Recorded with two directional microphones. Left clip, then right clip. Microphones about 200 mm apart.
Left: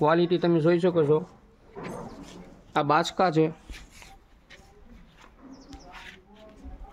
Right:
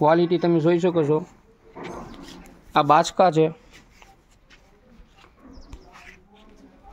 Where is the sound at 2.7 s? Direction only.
25° right (ahead or behind).